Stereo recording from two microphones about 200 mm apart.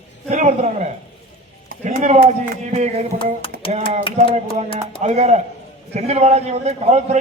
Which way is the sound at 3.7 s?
35° right (ahead or behind).